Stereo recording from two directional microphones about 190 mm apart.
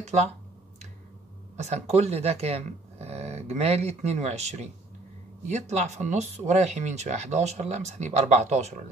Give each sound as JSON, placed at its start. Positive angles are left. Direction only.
{"t": 1.6, "sound": "speech", "side_deg": -35}